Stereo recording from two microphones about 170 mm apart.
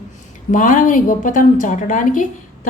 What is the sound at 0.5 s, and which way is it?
A woman's voice, 50° left (ahead or behind).